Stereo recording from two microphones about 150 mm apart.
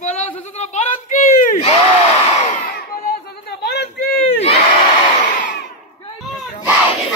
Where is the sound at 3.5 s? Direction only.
90° left.